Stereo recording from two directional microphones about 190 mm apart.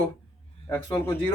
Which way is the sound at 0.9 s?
10° left (ahead or behind).